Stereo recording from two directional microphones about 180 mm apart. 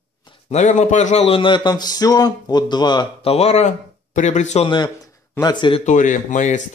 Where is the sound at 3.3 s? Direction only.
35° left (ahead or behind).